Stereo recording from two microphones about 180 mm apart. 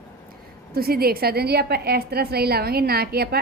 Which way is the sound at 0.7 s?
60° right (ahead or behind).